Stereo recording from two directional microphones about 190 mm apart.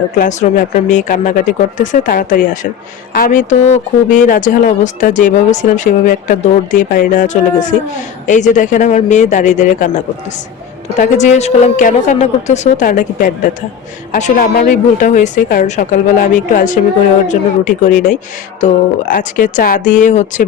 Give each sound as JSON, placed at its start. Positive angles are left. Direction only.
{"t": 0.2, "sound": "speech", "side_deg": 40}
{"t": 10.9, "sound": "a woman's voice", "side_deg": 40}